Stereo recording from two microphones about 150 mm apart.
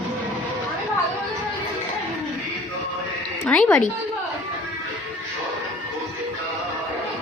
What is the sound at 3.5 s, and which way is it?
Speech, 10° left (ahead or behind).